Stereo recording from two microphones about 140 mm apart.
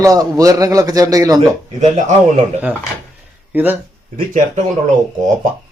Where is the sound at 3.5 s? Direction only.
15° right (ahead or behind).